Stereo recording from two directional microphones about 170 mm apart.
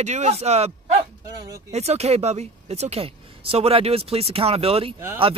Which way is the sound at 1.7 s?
40° right (ahead or behind).